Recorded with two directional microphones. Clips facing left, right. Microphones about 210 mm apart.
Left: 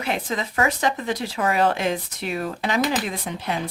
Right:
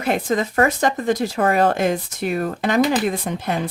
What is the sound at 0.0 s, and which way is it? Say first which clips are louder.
Speech: right 6 dB; 45° right (ahead or behind).